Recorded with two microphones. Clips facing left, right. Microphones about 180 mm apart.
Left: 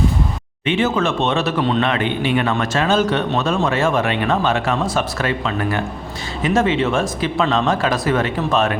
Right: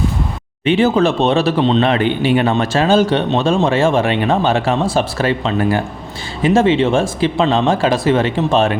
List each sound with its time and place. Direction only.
0.6 s speech: 35° right (ahead or behind)